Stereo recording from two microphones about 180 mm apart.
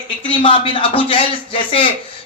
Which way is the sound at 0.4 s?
30° left (ahead or behind).